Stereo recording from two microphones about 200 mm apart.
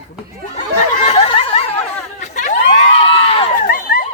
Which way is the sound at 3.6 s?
45° left (ahead or behind).